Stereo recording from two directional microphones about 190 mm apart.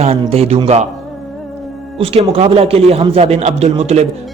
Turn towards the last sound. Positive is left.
turn(degrees=-35)  # may be behind; listen again after turning